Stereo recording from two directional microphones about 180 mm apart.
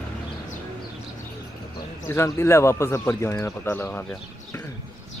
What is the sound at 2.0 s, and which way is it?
Speech, 15° left (ahead or behind).